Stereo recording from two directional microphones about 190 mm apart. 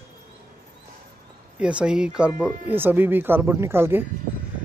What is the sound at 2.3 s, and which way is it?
Speech, 15° left (ahead or behind).